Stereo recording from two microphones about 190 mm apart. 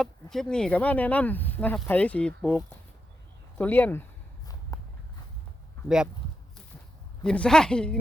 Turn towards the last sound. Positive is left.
turn(degrees=5)  # may be behind; listen again after turning